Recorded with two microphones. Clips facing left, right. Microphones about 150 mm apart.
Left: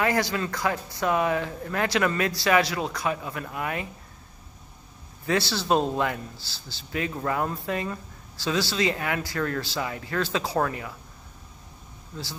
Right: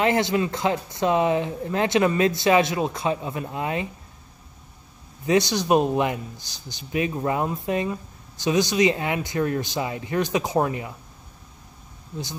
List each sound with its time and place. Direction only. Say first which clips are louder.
0.0 s speech: right 4 dB; 20° right (ahead or behind)
5.2 s speech: right 5 dB; 20° right (ahead or behind)